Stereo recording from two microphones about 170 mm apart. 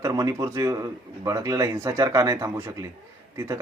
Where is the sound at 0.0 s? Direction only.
20° right (ahead or behind).